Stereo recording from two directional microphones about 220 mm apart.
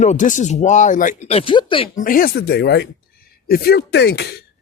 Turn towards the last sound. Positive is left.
turn(degrees=45)  # may be behind; listen again after turning